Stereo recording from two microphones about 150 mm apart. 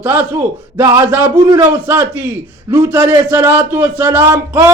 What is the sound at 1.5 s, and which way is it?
A man's voice, 10° right (ahead or behind).